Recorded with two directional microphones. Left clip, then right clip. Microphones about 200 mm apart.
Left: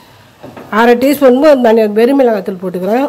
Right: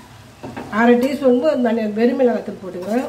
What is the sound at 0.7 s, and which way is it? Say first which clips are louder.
A woman's voice: left 7 dB; 50° left (ahead or behind).